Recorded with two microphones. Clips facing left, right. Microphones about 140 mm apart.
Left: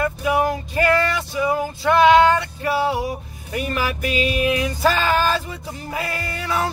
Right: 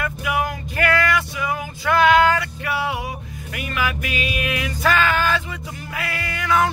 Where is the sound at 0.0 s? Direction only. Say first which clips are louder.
Left 4 dB; 30° left (ahead or behind).